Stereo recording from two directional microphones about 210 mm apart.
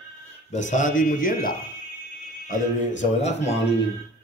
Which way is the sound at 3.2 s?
30° left (ahead or behind).